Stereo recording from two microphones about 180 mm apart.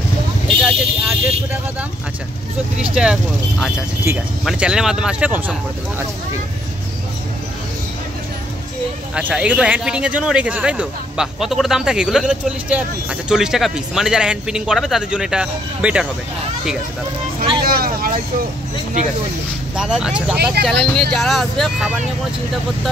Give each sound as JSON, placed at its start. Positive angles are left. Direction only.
{"t": 0.7, "sound": "vehicle", "side_deg": -10}
{"t": 2.8, "sound": "speech", "side_deg": -5}
{"t": 9.1, "sound": "speech", "side_deg": -5}
{"t": 17.6, "sound": "vehicle", "side_deg": -55}
{"t": 19.7, "sound": "speech", "side_deg": -5}